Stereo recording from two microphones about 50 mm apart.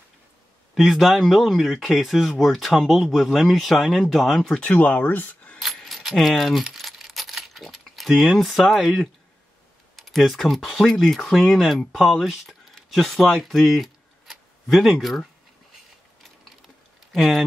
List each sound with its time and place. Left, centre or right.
0.7 s speech: centre
4.6 s speech: left
5.6 s keys jangling: centre
9.9 s speech: centre
17.1 s speech: centre